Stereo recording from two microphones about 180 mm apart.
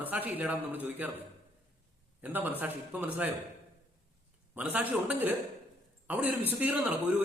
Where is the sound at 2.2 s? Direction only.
10° right (ahead or behind).